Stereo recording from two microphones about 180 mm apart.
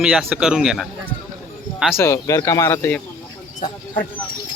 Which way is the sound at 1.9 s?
15° left (ahead or behind).